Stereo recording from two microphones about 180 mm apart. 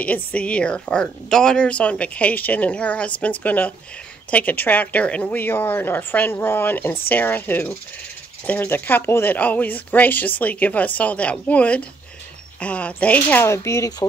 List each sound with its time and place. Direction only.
0.0 s a woman's voice: 5° left (ahead or behind)